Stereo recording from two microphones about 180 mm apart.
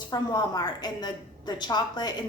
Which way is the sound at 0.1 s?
20° left (ahead or behind).